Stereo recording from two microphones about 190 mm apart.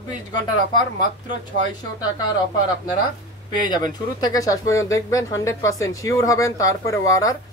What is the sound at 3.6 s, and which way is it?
Speech, 20° left (ahead or behind).